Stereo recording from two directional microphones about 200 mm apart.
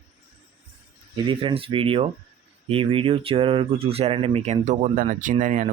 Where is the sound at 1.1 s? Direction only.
25° right (ahead or behind).